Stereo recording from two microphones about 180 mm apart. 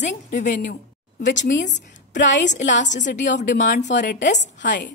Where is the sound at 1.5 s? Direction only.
80° left.